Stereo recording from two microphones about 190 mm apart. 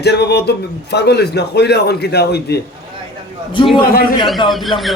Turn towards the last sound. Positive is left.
turn(degrees=0)  # may be behind; listen again after turning